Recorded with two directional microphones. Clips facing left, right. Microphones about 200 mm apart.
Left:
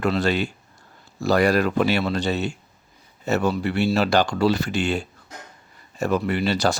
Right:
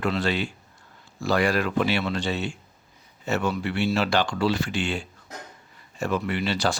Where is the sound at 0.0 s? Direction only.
40° left (ahead or behind).